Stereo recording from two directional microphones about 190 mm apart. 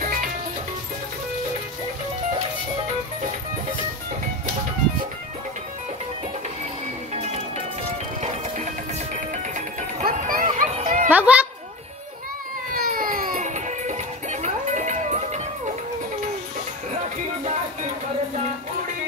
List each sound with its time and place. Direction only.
0.0 s music: 45° right (ahead or behind)
7.2 s music: 30° right (ahead or behind)
9.3 s music: 40° right (ahead or behind)
11.1 s a child's voice: 10° right (ahead or behind)
12.7 s music: 50° right (ahead or behind)